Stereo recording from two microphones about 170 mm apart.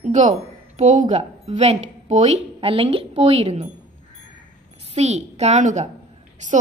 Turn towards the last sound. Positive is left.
turn(degrees=-45)  # may be behind; listen again after turning